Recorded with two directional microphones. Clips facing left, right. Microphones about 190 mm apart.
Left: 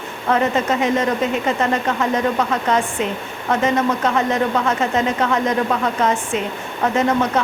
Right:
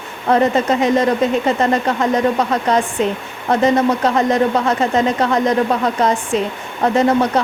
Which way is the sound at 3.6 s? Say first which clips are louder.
Right 4 dB; 35° right (ahead or behind).